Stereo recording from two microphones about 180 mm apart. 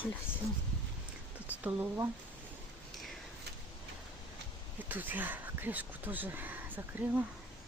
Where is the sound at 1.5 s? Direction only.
10° right (ahead or behind).